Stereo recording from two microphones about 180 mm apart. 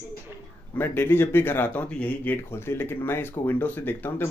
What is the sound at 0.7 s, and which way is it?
Speech, 10° left (ahead or behind).